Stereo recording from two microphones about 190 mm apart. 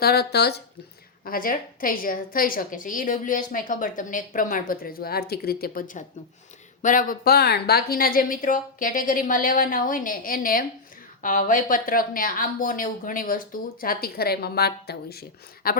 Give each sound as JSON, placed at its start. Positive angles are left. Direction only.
{"t": 0.0, "sound": "speech", "side_deg": 55}
{"t": 1.2, "sound": "a woman's voice", "side_deg": 50}